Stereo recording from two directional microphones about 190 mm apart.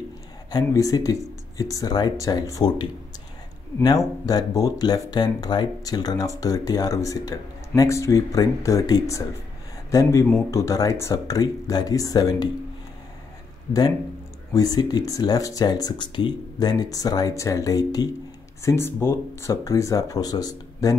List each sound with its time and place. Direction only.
0.5 s speech: 20° left (ahead or behind)
4.3 s speech: 20° left (ahead or behind)
14.5 s speech: 20° left (ahead or behind)